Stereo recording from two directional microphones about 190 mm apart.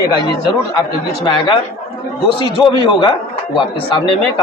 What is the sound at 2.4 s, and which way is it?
A man's voice, 25° left (ahead or behind).